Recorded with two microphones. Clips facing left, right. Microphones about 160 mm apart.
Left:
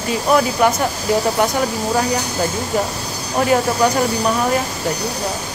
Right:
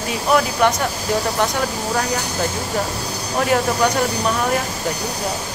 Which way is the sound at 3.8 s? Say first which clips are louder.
Left 3 dB; 5° left (ahead or behind).